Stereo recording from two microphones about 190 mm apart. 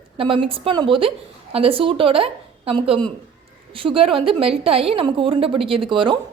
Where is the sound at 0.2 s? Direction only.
25° right (ahead or behind).